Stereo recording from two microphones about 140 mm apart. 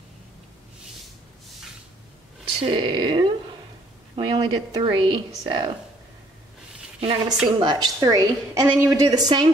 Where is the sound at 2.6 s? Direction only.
35° right (ahead or behind).